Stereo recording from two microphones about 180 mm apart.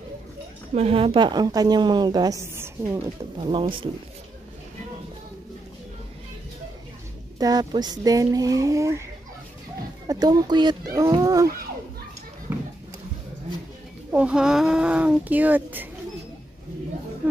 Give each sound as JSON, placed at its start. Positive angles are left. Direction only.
{"t": 0.7, "sound": "a woman's voice", "side_deg": -35}
{"t": 3.3, "sound": "a woman's voice", "side_deg": -25}
{"t": 7.3, "sound": "a woman's voice", "side_deg": -20}
{"t": 10.0, "sound": "a woman's voice", "side_deg": -20}
{"t": 12.5, "sound": "music", "side_deg": -10}
{"t": 14.1, "sound": "speech", "side_deg": -5}